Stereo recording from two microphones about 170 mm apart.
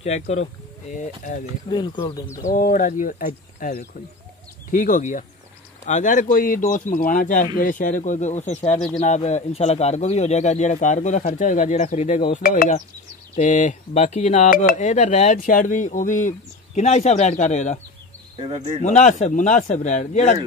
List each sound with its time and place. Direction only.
0.0 s speech: 40° left (ahead or behind)
1.7 s speech: 25° left (ahead or behind)
2.4 s speech: 55° left (ahead or behind)
18.4 s speech: 30° right (ahead or behind)
18.8 s speech: 45° left (ahead or behind)